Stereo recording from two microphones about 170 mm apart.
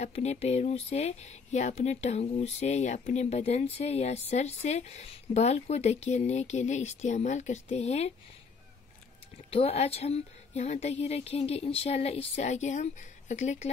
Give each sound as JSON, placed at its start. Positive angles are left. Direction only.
{"t": 0.0, "sound": "speech", "side_deg": 40}
{"t": 9.5, "sound": "speech", "side_deg": 35}